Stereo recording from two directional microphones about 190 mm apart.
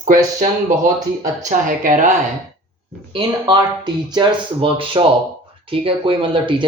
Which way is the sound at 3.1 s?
25° right (ahead or behind).